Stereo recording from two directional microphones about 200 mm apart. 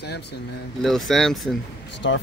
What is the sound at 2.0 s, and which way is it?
Speech, 70° left (ahead or behind).